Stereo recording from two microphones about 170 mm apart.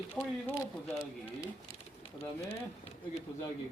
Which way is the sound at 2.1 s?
35° left (ahead or behind).